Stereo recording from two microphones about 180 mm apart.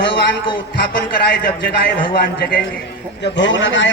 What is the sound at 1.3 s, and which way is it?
Speech, 70° left (ahead or behind).